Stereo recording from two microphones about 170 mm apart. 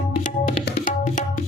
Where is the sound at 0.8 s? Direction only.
50° left (ahead or behind).